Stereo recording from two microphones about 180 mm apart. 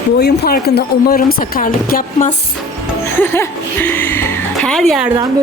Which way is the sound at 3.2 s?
10° left (ahead or behind).